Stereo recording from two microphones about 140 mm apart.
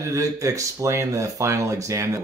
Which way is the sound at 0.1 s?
20° right (ahead or behind).